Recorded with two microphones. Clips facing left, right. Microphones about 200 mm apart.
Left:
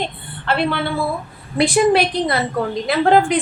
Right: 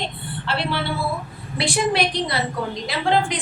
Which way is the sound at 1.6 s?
55° left (ahead or behind).